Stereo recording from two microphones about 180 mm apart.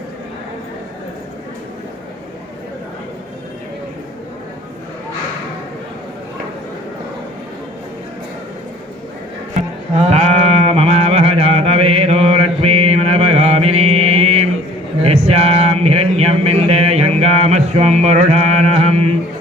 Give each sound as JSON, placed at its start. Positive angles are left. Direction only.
{"t": 9.6, "sound": "music", "side_deg": -35}
{"t": 15.0, "sound": "mantra", "side_deg": -35}